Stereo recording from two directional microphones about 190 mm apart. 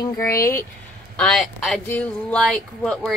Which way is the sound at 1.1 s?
5° left (ahead or behind).